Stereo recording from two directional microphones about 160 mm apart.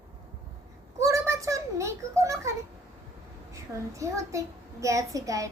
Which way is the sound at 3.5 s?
20° right (ahead or behind).